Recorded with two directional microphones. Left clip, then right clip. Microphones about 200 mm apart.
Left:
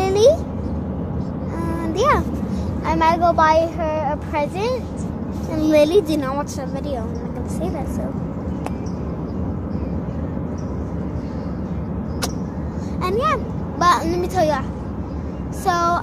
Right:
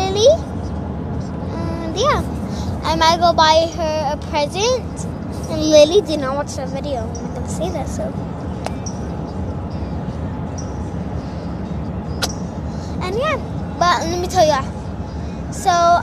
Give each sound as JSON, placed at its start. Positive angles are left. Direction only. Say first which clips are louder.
{"t": 0.0, "sound": "a sound", "louder": "right 1 dB", "side_deg": 5}
{"t": 2.0, "sound": "a sound", "louder": "even", "side_deg": 0}
{"t": 2.9, "sound": "a child's voice", "louder": "right 2 dB", "side_deg": -10}
{"t": 3.8, "sound": "child singing", "louder": "right 2 dB", "side_deg": -30}
{"t": 4.3, "sound": "a child's voice", "louder": "right 4 dB", "side_deg": -10}
{"t": 13.0, "sound": "a child's voice", "louder": "left 1 dB", "side_deg": 0}
{"t": 15.6, "sound": "speech", "louder": "right 5 dB", "side_deg": 0}